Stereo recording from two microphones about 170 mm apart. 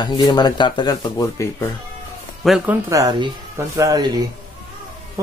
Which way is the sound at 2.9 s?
20° right (ahead or behind).